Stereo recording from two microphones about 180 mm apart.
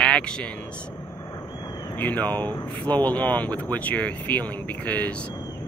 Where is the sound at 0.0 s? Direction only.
5° left (ahead or behind).